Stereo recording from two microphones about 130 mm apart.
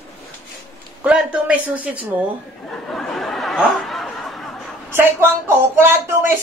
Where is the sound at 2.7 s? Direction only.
5° left (ahead or behind).